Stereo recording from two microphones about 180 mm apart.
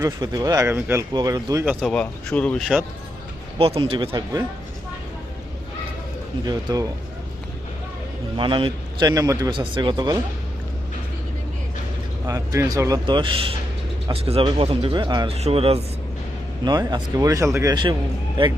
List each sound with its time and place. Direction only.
0.0 s a man's voice: 20° right (ahead or behind)
1.8 s speech: 5° left (ahead or behind)
3.6 s a man's voice: 30° right (ahead or behind)
6.4 s a man's voice: 20° right (ahead or behind)
8.4 s a man's voice: 30° right (ahead or behind)
12.2 s a man's voice: 15° right (ahead or behind)
15.3 s speech: 35° right (ahead or behind)
16.6 s a man's voice: 20° right (ahead or behind)